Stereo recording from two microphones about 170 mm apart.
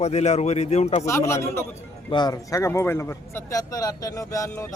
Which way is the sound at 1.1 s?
15° left (ahead or behind).